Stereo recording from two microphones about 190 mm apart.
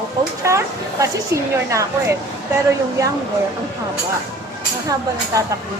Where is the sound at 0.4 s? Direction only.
15° right (ahead or behind).